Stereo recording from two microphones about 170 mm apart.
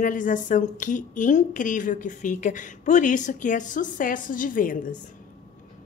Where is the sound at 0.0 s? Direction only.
50° left (ahead or behind).